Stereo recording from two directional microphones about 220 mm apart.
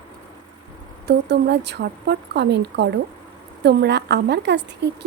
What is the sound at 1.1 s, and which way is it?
A woman's voice, 50° right (ahead or behind).